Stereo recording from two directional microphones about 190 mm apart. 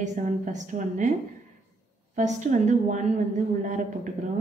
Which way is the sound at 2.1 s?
40° right (ahead or behind).